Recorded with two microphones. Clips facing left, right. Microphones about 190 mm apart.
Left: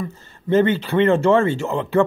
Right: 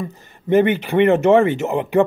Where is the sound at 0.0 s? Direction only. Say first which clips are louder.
Even; 15° right (ahead or behind).